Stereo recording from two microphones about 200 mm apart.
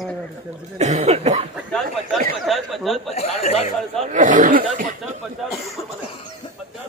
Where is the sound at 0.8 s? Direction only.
35° right (ahead or behind).